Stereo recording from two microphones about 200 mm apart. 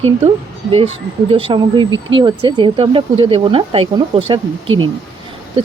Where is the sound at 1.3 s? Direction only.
25° right (ahead or behind).